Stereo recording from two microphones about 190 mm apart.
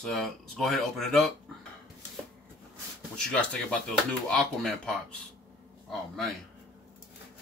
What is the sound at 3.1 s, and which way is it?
Speech, 5° left (ahead or behind).